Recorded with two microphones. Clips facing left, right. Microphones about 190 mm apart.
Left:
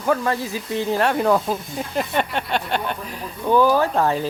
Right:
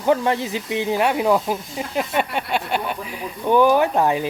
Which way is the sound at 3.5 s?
20° right (ahead or behind).